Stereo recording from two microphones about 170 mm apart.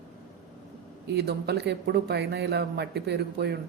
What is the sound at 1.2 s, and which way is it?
A man's voice, 70° right (ahead or behind).